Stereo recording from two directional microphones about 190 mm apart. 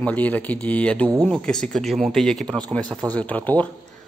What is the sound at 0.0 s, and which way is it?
Speech, 10° left (ahead or behind).